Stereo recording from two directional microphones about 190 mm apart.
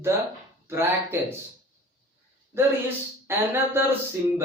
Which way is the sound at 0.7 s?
15° right (ahead or behind).